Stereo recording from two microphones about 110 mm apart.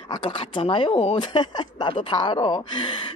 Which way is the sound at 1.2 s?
45° left (ahead or behind).